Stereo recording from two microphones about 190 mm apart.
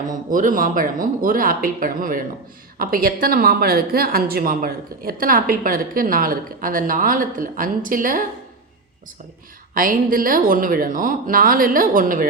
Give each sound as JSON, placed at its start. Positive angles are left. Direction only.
{"t": 0.1, "sound": "speech", "side_deg": -45}
{"t": 9.7, "sound": "speech", "side_deg": -50}